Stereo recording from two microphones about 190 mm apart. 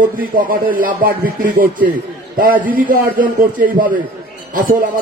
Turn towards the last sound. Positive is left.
turn(degrees=-45)  # may be behind; listen again after turning